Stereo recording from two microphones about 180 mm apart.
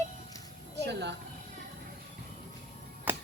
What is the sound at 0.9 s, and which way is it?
Speech, 70° right (ahead or behind).